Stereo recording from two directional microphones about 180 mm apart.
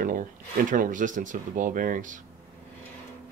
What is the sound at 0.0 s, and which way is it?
Speech, 50° right (ahead or behind).